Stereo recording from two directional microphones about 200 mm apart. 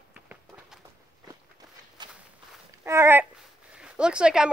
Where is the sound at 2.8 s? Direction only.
10° right (ahead or behind).